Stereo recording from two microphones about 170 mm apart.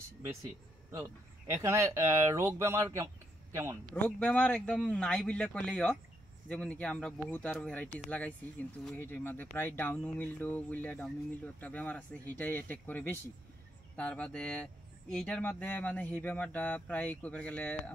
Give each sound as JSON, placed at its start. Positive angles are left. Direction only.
{"t": 0.9, "sound": "speech", "side_deg": -15}
{"t": 3.9, "sound": "speech", "side_deg": 10}
{"t": 8.9, "sound": "speech", "side_deg": 10}